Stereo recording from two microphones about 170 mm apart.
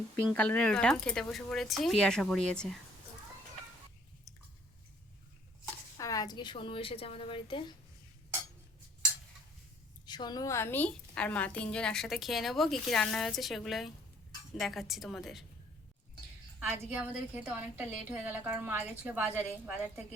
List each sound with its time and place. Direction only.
0.3 s a woman's voice: 5° left (ahead or behind)
4.3 s chewing: centre (ahead or behind)
6.0 s a woman's voice: 20° left (ahead or behind)
10.1 s a woman's voice: 25° left (ahead or behind); by 15.4 s centre (ahead or behind)
16.6 s a woman's voice: 10° right (ahead or behind)